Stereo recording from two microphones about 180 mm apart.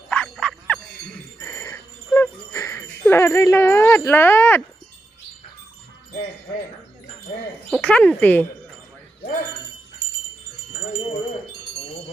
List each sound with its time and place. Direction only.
0.1 s music: 5° left (ahead or behind)
7.7 s speech: 5° left (ahead or behind)